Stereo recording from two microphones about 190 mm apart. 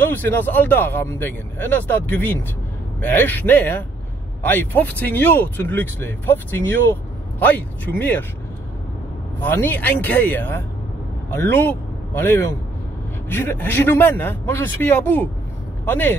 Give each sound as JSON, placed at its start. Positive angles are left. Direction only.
{"t": 0.0, "sound": "speech", "side_deg": 10}
{"t": 9.4, "sound": "a man's voice", "side_deg": 10}